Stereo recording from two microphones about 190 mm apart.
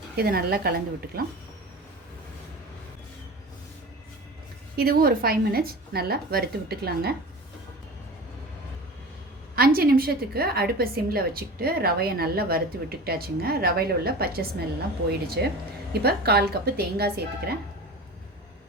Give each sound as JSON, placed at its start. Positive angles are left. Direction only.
{"t": 0.2, "sound": "a woman's voice", "side_deg": -55}
{"t": 4.8, "sound": "a woman's voice", "side_deg": -50}
{"t": 9.6, "sound": "a woman's voice", "side_deg": -50}